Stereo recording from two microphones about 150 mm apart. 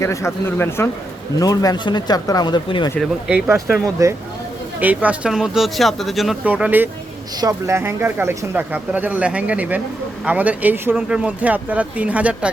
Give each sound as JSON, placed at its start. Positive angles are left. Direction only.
{"t": 0.0, "sound": "speech", "side_deg": 20}
{"t": 3.0, "sound": "speech", "side_deg": -5}
{"t": 4.0, "sound": "speech", "side_deg": -20}
{"t": 4.8, "sound": "speech", "side_deg": -10}
{"t": 6.5, "sound": "speech", "side_deg": -10}